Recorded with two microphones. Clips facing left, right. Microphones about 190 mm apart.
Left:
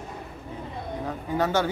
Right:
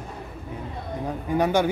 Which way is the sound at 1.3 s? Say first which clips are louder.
Right 3 dB; 15° right (ahead or behind).